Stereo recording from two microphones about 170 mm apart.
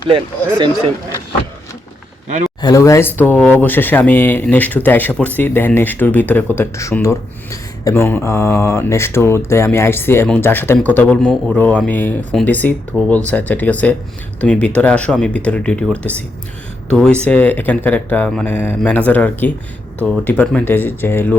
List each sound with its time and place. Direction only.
2.6 s speech: 20° left (ahead or behind)